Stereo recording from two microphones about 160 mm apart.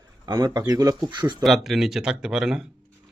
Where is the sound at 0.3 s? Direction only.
25° right (ahead or behind).